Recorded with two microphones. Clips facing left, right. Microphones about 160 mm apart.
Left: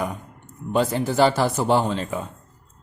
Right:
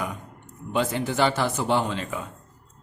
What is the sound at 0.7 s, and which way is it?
A man's voice, 40° left (ahead or behind).